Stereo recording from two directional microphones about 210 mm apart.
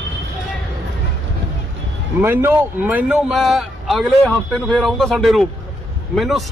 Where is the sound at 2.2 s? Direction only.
10° right (ahead or behind).